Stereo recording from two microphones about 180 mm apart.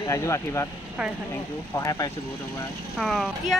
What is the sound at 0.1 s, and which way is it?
Speech, 15° left (ahead or behind).